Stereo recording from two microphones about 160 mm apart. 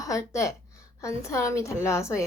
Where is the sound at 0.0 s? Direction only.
20° left (ahead or behind).